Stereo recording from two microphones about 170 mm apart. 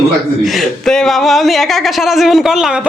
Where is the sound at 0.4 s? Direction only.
Centre (ahead or behind).